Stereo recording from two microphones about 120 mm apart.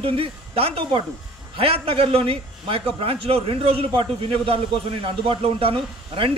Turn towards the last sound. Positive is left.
turn(degrees=-50)  # may be behind; listen again after turning